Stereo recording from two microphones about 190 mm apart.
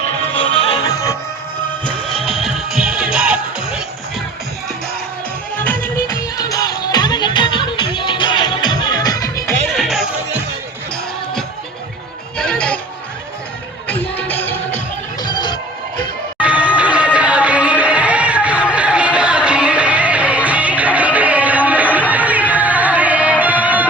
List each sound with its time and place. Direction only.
0.4 s music: 25° left (ahead or behind)
1.9 s music: centre (ahead or behind)
5.5 s music: 10° left (ahead or behind)
9.6 s music: centre (ahead or behind)
12.4 s music: 5° left (ahead or behind)
13.8 s music: 10° left (ahead or behind)
15.2 s music: 20° left (ahead or behind)
16.4 s music: 5° right (ahead or behind)